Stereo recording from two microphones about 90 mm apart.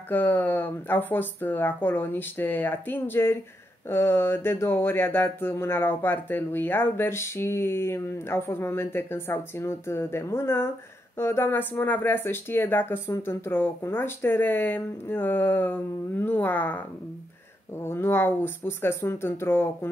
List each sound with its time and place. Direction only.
0.1 s speech: 20° left (ahead or behind)
17.8 s speech: 25° left (ahead or behind)